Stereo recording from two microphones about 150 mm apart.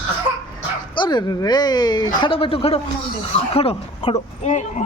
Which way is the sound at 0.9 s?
30° left (ahead or behind).